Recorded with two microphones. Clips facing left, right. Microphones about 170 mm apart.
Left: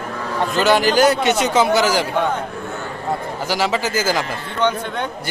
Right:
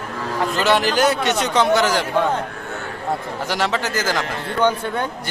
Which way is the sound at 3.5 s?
Centre (ahead or behind).